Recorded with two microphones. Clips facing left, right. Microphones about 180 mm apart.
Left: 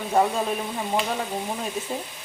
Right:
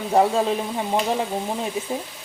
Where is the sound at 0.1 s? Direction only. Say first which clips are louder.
Right 4 dB; 25° right (ahead or behind).